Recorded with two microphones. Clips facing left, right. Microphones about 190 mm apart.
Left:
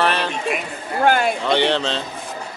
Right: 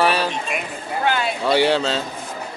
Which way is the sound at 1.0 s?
50° left (ahead or behind).